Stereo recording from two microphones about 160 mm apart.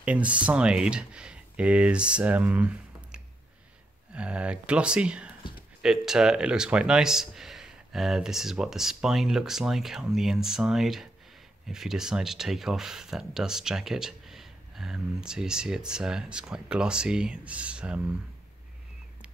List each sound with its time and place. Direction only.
0.0 s speech: 10° right (ahead or behind)